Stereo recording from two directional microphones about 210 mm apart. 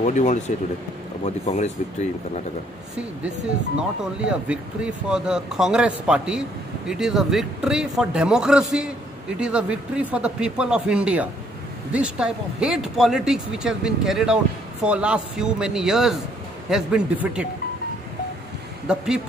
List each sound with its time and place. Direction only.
0.0 s speech: 35° left (ahead or behind)
3.3 s speech: 5° right (ahead or behind)
18.9 s speech: 5° right (ahead or behind)